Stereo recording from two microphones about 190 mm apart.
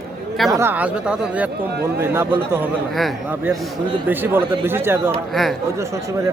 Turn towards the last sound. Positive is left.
turn(degrees=-15)  # may be behind; listen again after turning